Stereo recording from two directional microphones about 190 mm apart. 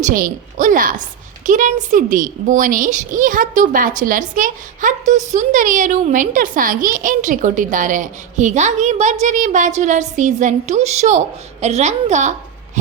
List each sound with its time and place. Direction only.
0.0 s a woman's voice: 45° right (ahead or behind)